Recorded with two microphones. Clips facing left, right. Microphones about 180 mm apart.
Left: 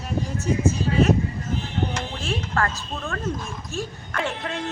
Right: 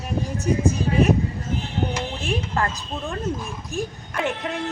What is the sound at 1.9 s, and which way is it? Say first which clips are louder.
A woman's voice: right 2 dB; 15° right (ahead or behind).